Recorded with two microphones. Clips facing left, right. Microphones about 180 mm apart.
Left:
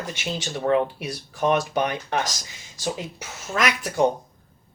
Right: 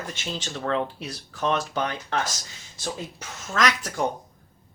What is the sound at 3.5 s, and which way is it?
Speech, 10° left (ahead or behind).